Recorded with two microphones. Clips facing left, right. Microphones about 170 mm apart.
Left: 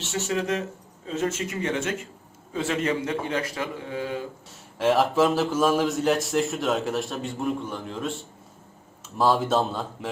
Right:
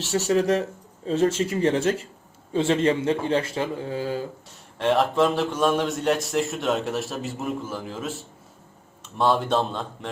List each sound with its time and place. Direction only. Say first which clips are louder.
0.0 s a man's voice: right 6 dB; 35° right (ahead or behind)
4.8 s speech: even; centre (ahead or behind)